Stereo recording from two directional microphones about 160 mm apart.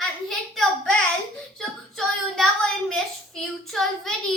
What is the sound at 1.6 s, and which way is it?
Child singing, centre (ahead or behind).